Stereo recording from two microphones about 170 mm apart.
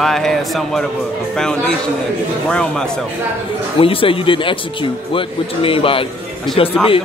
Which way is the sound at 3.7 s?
35° left (ahead or behind).